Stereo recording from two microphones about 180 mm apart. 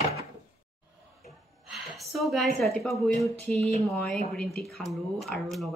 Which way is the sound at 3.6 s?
40° right (ahead or behind).